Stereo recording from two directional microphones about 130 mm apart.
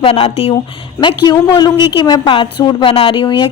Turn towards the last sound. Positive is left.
turn(degrees=40)  # may be behind; listen again after turning